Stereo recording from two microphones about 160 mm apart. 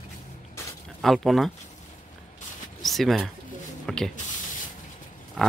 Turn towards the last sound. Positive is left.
turn(degrees=0)  # may be behind; listen again after turning